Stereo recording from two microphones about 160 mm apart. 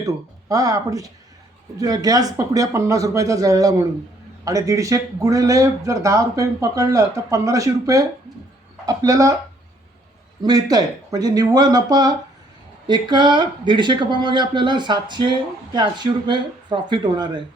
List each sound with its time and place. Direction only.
0.0 s speech: 20° right (ahead or behind)
10.4 s speech: 25° right (ahead or behind)